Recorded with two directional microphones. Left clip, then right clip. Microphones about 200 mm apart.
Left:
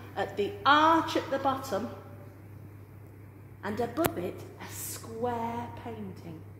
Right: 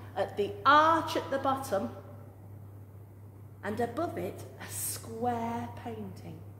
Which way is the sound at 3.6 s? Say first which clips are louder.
Left 2 dB; 5° right (ahead or behind).